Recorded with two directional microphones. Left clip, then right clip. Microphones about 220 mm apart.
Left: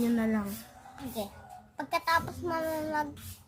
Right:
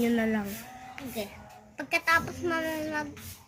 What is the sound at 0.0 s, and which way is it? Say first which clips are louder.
Speech: right 3 dB; centre (ahead or behind).